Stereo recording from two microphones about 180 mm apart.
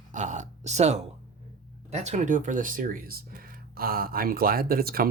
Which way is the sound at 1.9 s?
40° right (ahead or behind).